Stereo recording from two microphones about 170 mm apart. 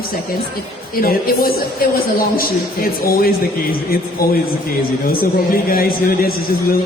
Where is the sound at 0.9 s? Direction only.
60° left (ahead or behind).